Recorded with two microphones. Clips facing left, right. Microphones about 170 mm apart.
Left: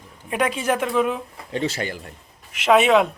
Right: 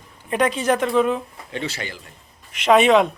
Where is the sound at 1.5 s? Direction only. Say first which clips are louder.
Left 4 dB; 45° left (ahead or behind).